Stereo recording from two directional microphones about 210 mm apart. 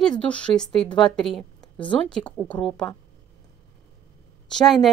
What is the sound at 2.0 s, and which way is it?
A woman's voice, 5° left (ahead or behind).